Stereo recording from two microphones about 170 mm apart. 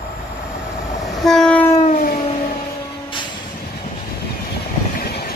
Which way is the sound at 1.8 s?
55° left (ahead or behind).